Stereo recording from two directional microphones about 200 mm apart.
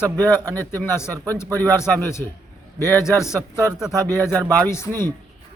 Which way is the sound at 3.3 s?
15° right (ahead or behind).